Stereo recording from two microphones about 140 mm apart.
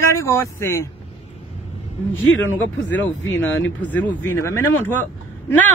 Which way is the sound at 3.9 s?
10° left (ahead or behind).